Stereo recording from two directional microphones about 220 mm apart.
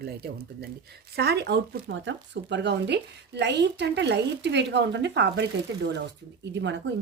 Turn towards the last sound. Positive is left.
turn(degrees=-55)  # may be behind; listen again after turning